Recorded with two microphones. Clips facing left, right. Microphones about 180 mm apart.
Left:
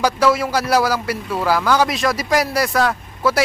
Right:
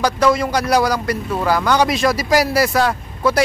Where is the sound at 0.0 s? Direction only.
5° left (ahead or behind).